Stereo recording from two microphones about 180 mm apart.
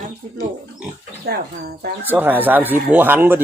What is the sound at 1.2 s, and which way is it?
Speech, 60° right (ahead or behind).